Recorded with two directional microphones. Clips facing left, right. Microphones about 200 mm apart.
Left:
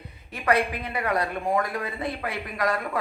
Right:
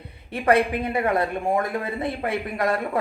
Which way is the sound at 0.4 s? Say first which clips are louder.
Right 4 dB; 25° right (ahead or behind).